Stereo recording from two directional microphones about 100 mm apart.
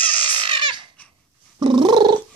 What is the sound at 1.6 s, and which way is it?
Purr, 50° right (ahead or behind).